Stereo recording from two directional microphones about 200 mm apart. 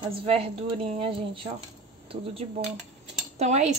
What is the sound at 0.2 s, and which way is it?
A woman's voice, 25° right (ahead or behind).